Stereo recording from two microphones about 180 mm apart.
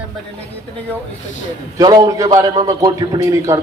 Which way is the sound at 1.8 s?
20° right (ahead or behind).